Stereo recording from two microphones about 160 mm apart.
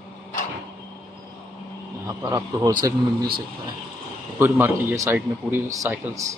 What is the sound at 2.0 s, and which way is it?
Speech, 20° right (ahead or behind).